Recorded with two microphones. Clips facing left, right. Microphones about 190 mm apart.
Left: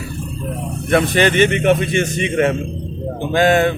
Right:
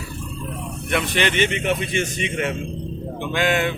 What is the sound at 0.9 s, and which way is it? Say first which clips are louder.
A man's voice: left 8 dB; 45° left (ahead or behind).